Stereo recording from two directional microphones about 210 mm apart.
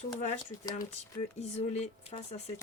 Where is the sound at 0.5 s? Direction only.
40° left (ahead or behind).